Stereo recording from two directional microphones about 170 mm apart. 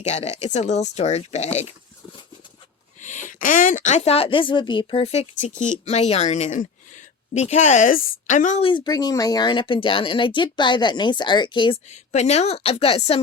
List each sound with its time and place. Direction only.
0.1 s speech: 40° left (ahead or behind)
3.0 s speech: 45° left (ahead or behind)
8.6 s speech: 25° left (ahead or behind)